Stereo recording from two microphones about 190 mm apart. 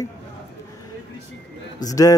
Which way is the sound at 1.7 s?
20° left (ahead or behind).